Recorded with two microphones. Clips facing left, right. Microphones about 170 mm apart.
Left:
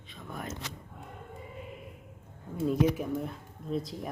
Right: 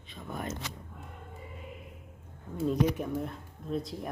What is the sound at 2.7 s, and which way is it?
Speech, centre (ahead or behind).